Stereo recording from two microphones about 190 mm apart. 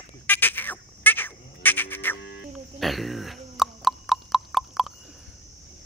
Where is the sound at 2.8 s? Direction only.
Centre (ahead or behind).